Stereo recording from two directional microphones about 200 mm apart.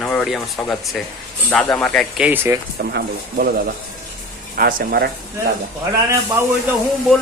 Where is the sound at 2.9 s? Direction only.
50° right (ahead or behind).